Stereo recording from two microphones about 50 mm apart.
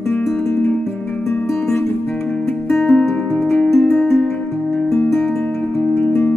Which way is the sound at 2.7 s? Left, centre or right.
Centre.